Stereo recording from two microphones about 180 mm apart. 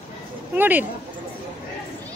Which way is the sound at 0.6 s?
10° right (ahead or behind).